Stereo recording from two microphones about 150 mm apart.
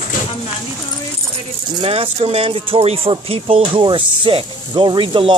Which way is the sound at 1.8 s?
40° right (ahead or behind).